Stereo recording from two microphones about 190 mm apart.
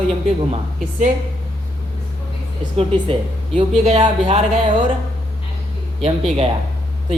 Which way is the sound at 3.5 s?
30° right (ahead or behind).